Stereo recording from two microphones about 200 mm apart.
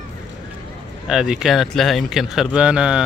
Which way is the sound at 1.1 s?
5° right (ahead or behind).